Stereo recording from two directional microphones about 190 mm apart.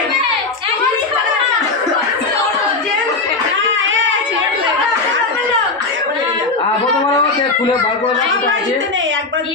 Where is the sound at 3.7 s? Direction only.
80° right.